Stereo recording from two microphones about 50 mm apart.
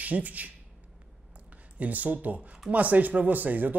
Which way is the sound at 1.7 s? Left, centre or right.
Right.